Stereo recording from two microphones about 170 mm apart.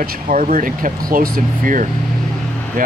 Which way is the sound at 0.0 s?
50° right (ahead or behind).